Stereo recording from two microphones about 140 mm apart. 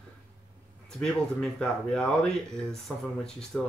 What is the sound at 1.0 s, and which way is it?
Speech, 5° left (ahead or behind).